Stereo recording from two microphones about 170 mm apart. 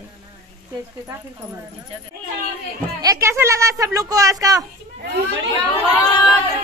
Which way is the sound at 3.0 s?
20° right (ahead or behind).